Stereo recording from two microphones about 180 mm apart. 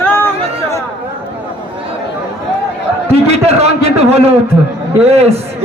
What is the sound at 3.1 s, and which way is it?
A man's voice, 35° right (ahead or behind).